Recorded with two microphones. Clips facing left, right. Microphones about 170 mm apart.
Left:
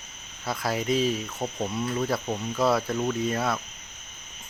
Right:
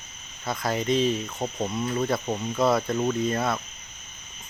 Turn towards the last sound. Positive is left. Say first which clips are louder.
# right 1 dB
turn(degrees=0)  # may be behind; listen again after turning